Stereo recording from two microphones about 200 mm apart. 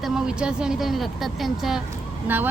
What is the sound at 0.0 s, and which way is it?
A woman's voice, 5° right (ahead or behind).